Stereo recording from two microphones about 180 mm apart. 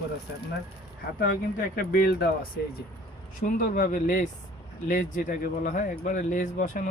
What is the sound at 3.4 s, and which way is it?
Speech, 45° left (ahead or behind).